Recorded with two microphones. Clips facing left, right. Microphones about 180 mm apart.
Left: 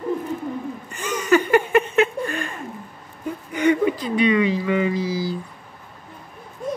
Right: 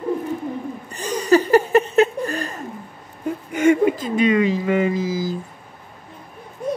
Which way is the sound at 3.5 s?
45° right (ahead or behind).